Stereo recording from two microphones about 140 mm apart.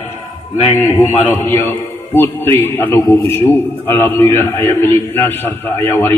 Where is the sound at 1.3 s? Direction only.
15° left (ahead or behind).